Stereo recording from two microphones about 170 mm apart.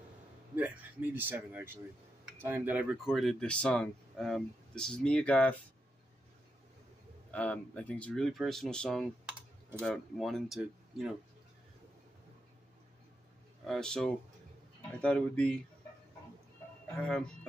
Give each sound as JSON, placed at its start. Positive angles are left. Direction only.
{"t": 0.6, "sound": "a man's voice", "side_deg": -10}
{"t": 7.2, "sound": "speech", "side_deg": 10}
{"t": 13.7, "sound": "speech", "side_deg": 5}
{"t": 16.9, "sound": "speech", "side_deg": 5}